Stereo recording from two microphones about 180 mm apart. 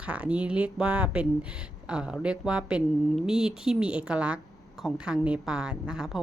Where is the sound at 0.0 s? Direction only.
5° right (ahead or behind).